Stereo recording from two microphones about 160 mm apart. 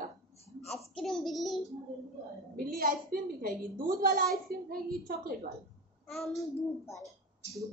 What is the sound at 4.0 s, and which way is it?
A woman's voice, 60° right (ahead or behind).